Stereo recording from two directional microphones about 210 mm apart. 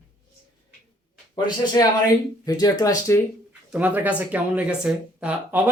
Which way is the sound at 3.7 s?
5° right (ahead or behind).